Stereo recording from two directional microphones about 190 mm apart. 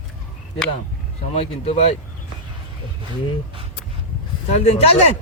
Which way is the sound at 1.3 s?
35° left (ahead or behind).